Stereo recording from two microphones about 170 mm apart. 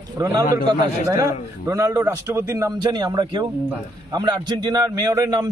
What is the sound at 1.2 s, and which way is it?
A man's voice, 20° right (ahead or behind).